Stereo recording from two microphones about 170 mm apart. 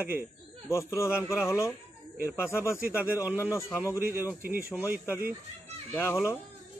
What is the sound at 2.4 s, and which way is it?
Speech, 15° left (ahead or behind).